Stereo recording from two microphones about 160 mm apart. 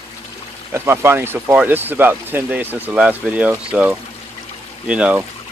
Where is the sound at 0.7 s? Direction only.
15° right (ahead or behind).